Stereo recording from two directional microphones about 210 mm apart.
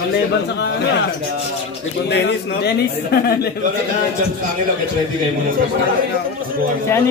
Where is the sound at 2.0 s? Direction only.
55° left (ahead or behind).